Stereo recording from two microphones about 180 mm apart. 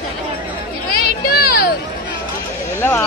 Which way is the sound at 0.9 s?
55° left (ahead or behind).